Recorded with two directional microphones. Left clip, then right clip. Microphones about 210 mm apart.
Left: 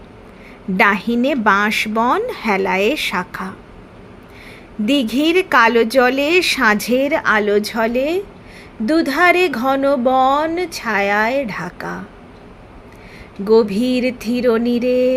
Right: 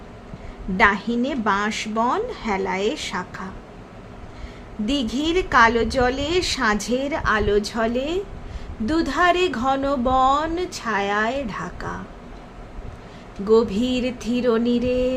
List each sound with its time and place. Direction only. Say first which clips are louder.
0.8 s a woman's voice: left 4 dB; 25° left (ahead or behind)
4.9 s a woman's voice: left 7 dB; 25° left (ahead or behind)
13.4 s a sound: left 4 dB; 20° left (ahead or behind)